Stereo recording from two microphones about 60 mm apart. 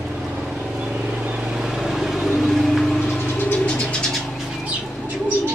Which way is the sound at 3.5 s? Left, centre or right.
Centre.